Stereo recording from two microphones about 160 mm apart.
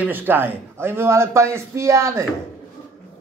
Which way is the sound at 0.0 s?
10° right (ahead or behind).